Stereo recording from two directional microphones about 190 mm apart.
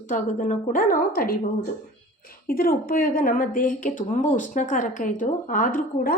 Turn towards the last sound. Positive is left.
turn(degrees=45)  # may be behind; listen again after turning